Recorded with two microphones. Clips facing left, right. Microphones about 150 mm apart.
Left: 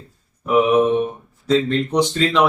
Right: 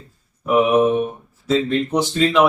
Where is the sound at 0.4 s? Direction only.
5° right (ahead or behind).